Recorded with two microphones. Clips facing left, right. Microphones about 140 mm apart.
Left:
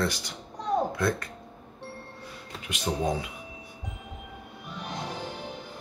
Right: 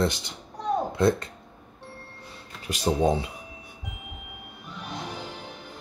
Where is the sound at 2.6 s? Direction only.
35° right (ahead or behind).